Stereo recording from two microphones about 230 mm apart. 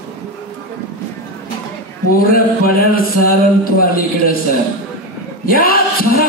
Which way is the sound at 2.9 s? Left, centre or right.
Left.